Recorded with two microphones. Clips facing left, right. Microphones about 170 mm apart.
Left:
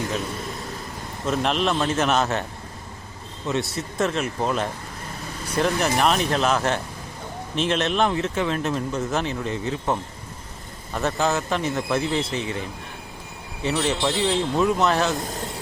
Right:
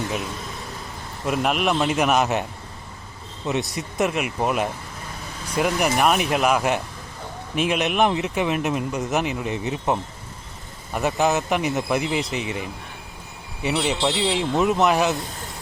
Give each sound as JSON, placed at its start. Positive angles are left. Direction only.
{"t": 1.3, "sound": "speech", "side_deg": -10}
{"t": 3.4, "sound": "speech", "side_deg": -20}